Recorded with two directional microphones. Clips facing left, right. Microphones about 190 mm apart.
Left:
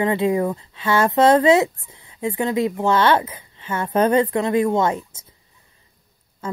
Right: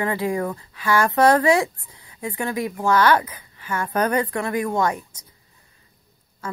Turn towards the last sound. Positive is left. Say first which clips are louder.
# left 2 dB
turn(degrees=25)  # may be behind; listen again after turning